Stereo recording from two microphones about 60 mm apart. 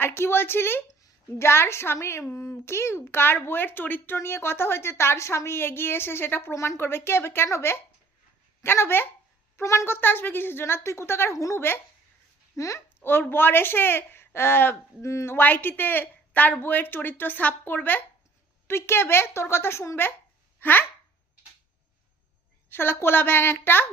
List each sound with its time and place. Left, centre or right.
0.0 s a woman's voice: left
13.0 s a woman's voice: left
15.0 s a woman's voice: left
15.3 s a woman's voice: left
18.7 s speech: left
20.6 s a child's voice: left
22.7 s a woman's voice: left